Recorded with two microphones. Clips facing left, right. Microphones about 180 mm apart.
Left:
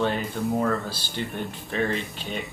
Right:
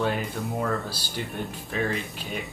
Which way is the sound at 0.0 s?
5° right (ahead or behind).